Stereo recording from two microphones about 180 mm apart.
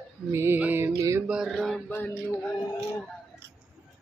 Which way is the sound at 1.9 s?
15° left (ahead or behind).